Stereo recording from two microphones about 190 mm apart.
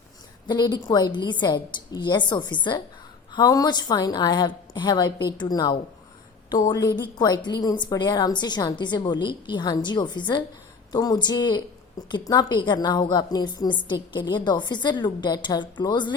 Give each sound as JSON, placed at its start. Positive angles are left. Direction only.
{"t": 0.4, "sound": "a woman's voice", "side_deg": 20}